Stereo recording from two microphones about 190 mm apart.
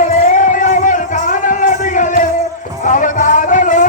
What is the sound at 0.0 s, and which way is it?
Music, 40° left (ahead or behind).